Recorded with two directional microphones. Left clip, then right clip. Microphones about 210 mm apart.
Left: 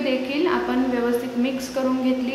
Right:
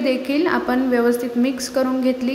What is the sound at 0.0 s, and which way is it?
A woman's voice, 25° right (ahead or behind).